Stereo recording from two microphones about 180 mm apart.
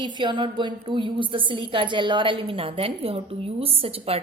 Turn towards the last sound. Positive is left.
turn(degrees=-30)  # may be behind; listen again after turning